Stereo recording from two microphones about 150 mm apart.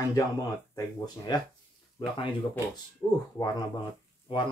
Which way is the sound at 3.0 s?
15° left (ahead or behind).